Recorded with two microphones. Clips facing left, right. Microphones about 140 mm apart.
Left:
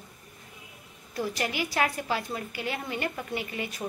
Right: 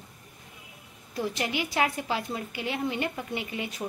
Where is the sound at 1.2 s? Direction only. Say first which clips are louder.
Even; 20° right (ahead or behind).